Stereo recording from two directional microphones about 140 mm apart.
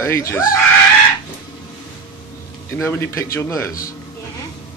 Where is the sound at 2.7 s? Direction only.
20° left (ahead or behind).